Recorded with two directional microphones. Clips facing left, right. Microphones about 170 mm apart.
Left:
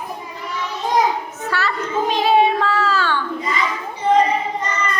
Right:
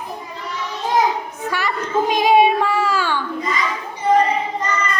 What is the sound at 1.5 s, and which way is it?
Child singing, 15° right (ahead or behind).